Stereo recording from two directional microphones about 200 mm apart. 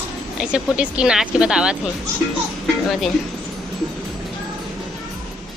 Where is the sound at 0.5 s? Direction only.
5° right (ahead or behind).